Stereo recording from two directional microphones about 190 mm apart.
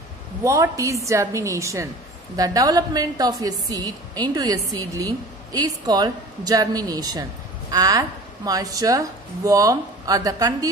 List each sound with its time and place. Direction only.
0.4 s a woman's voice: 15° right (ahead or behind)